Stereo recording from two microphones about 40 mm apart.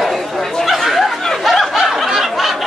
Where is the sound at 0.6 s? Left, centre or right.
Centre.